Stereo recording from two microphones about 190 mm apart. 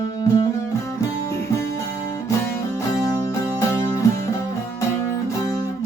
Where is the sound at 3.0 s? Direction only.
15° left (ahead or behind).